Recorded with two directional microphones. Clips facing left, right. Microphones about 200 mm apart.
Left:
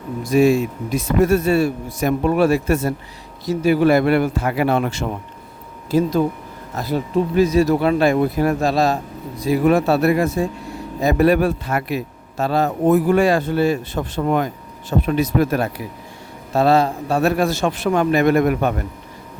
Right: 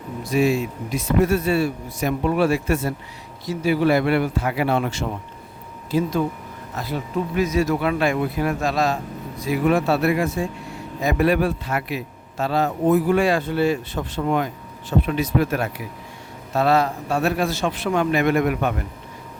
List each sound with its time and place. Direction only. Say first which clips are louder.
0.3 s a man's voice: left 5 dB; 45° left (ahead or behind)
5.9 s a man's voice: left 4 dB; 35° left (ahead or behind)